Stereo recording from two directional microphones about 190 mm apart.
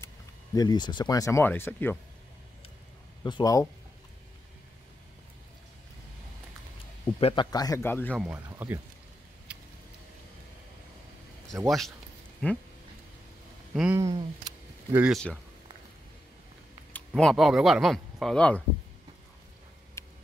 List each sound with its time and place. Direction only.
0.6 s speech: 20° left (ahead or behind)
3.3 s speech: 20° left (ahead or behind)
7.2 s a man's voice: 30° left (ahead or behind)
7.5 s speech: 20° left (ahead or behind)
8.3 s speech: 10° right (ahead or behind)
9.5 s a sound: 5° right (ahead or behind)
11.5 s speech: 5° right (ahead or behind)
12.4 s speech: 5° left (ahead or behind)
13.7 s speech: 10° right (ahead or behind)
15.0 s speech: centre (ahead or behind)
17.1 s speech: centre (ahead or behind)
20.0 s tick: 15° left (ahead or behind)